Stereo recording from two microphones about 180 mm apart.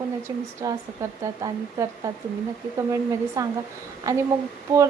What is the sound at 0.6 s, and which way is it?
Speech, 20° right (ahead or behind).